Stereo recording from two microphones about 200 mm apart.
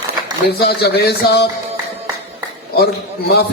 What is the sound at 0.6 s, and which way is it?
Speech, 55° left (ahead or behind).